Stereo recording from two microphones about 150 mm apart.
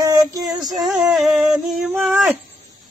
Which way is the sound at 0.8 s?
Centre (ahead or behind).